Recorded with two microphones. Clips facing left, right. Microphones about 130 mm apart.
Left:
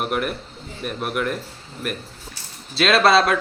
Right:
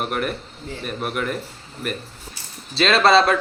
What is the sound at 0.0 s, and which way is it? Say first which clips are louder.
Speech: left 1 dB; 5° left (ahead or behind).